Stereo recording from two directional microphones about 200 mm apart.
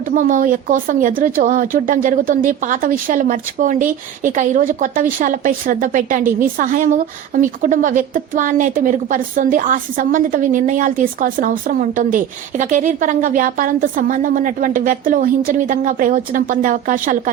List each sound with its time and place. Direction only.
0.2 s speech: 40° right (ahead or behind)